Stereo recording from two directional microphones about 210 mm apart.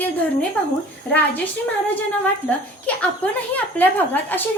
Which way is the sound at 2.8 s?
5° left (ahead or behind).